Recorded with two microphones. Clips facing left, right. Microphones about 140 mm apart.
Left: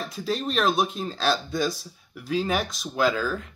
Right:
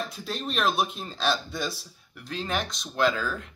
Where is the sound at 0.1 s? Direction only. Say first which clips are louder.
Left 5 dB; centre (ahead or behind).